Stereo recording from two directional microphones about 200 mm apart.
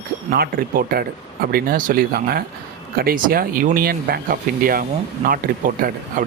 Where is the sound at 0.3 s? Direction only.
50° right (ahead or behind).